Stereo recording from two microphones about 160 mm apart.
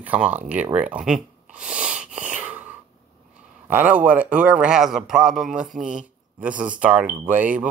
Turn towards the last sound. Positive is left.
turn(degrees=-10)  # may be behind; listen again after turning